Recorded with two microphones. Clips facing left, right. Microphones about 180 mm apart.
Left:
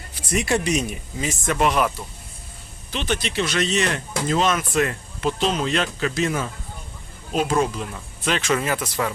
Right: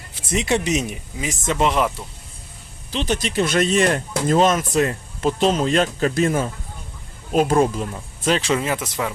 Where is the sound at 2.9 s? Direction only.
35° right (ahead or behind).